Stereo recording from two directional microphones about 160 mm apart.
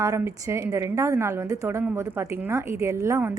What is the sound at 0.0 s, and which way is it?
A woman's voice, 20° right (ahead or behind).